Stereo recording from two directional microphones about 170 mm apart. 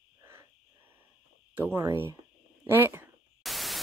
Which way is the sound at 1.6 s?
15° right (ahead or behind).